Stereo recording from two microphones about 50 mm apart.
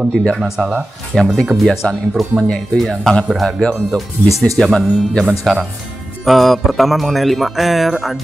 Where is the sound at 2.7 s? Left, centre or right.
Centre.